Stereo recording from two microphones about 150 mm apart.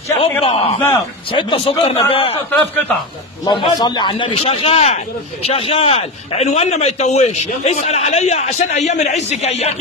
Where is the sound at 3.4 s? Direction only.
30° left (ahead or behind).